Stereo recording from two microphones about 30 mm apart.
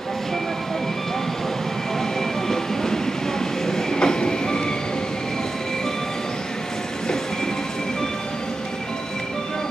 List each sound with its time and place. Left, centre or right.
2.4 s train: centre